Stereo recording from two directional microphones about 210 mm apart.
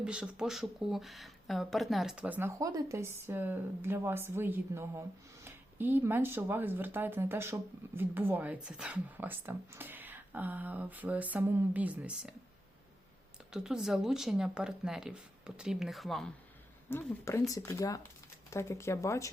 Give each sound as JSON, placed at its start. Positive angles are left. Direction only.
{"t": 0.0, "sound": "speech", "side_deg": -5}
{"t": 13.5, "sound": "speech", "side_deg": 0}
{"t": 16.9, "sound": "speech", "side_deg": 15}